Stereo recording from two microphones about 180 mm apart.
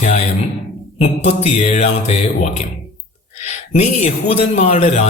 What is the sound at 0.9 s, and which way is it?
A man's voice, 35° left (ahead or behind).